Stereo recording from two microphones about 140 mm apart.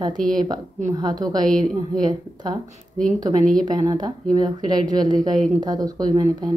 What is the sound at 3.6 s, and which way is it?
Speech, 30° right (ahead or behind).